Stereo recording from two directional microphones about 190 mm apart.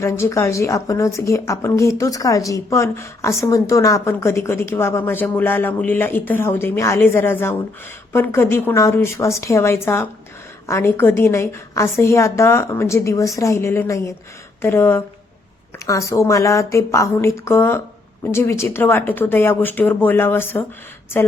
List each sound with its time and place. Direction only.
0.0 s a woman's voice: 15° left (ahead or behind)